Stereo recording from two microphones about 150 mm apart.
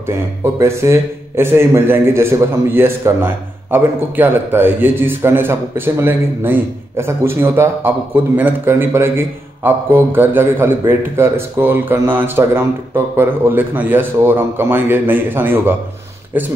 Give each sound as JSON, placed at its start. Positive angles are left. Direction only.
{"t": 0.0, "sound": "a man's voice", "side_deg": -15}